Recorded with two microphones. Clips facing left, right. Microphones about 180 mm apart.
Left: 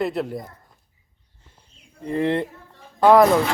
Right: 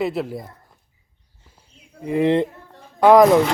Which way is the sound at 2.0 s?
10° right (ahead or behind).